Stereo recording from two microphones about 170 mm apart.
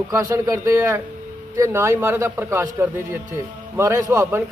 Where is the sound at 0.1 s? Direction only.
20° right (ahead or behind).